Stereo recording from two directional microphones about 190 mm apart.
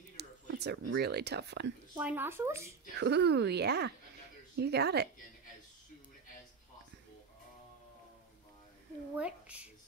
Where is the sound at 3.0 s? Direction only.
60° right (ahead or behind).